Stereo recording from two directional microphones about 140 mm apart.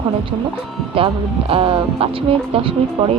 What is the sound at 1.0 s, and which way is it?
Speech, 40° right (ahead or behind).